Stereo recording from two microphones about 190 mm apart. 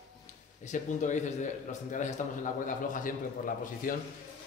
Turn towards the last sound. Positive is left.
turn(degrees=45)  # may be behind; listen again after turning